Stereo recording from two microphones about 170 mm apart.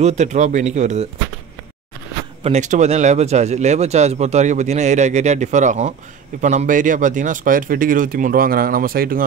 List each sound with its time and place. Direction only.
0.0 s a man's voice: 45° right (ahead or behind)
2.4 s speech: 40° right (ahead or behind); by 9.2 s 60° right (ahead or behind)